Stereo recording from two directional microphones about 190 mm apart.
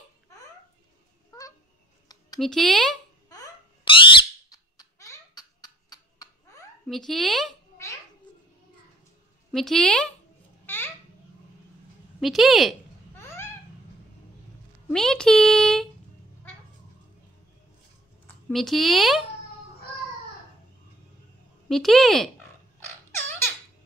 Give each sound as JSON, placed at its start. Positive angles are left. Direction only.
{"t": 2.4, "sound": "speech", "side_deg": 0}
{"t": 3.3, "sound": "a sound", "side_deg": 25}
{"t": 6.9, "sound": "speech", "side_deg": 0}
{"t": 9.5, "sound": "speech", "side_deg": 0}
{"t": 10.7, "sound": "babbling", "side_deg": 10}
{"t": 12.2, "sound": "speech", "side_deg": 0}
{"t": 13.2, "sound": "babbling", "side_deg": 15}
{"t": 14.9, "sound": "speech", "side_deg": 5}
{"t": 18.2, "sound": "speech", "side_deg": 5}
{"t": 21.6, "sound": "speech", "side_deg": 0}